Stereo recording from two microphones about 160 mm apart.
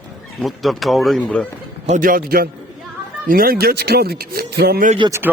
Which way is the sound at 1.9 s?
60° right (ahead or behind).